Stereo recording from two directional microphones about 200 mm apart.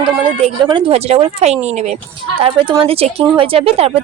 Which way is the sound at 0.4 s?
25° right (ahead or behind).